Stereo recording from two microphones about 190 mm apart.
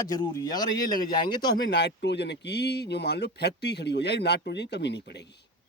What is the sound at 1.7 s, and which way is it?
Speech, 65° left (ahead or behind).